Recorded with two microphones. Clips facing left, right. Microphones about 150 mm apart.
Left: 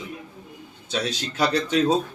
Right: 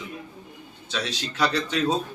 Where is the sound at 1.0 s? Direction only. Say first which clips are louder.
Left 1 dB; 45° left (ahead or behind).